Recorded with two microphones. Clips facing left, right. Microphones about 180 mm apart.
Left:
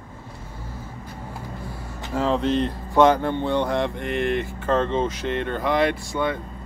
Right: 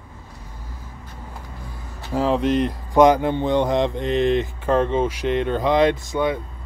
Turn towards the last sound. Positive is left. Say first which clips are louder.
# right 4 dB
turn(degrees=-15)  # may be behind; listen again after turning